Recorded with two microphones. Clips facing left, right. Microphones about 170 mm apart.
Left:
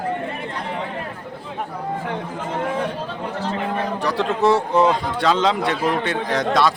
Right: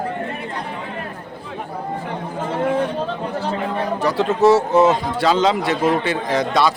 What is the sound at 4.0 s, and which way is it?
A man's voice, centre (ahead or behind).